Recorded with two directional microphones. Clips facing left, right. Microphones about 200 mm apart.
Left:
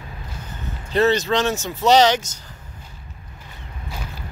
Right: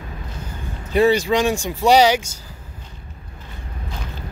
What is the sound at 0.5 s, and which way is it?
Speech, 10° right (ahead or behind).